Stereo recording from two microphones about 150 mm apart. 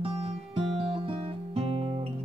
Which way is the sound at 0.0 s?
40° right (ahead or behind).